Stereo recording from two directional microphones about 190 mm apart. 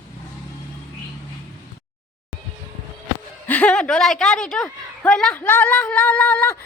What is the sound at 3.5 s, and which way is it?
A woman's voice, 5° left (ahead or behind).